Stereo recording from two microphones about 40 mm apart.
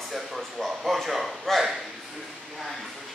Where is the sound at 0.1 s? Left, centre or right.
Centre.